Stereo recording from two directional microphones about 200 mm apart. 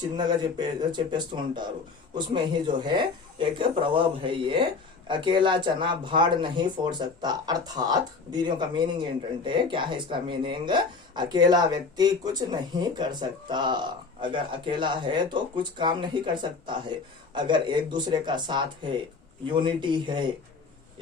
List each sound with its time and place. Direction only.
0.0 s speech: 20° right (ahead or behind)